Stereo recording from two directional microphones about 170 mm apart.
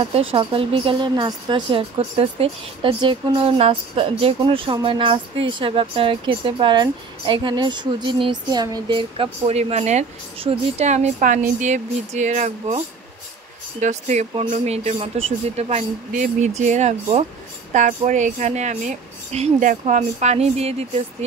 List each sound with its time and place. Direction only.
0.0 s a woman's voice: 35° right (ahead or behind)